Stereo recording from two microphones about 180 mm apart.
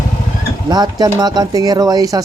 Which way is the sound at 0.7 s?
20° right (ahead or behind).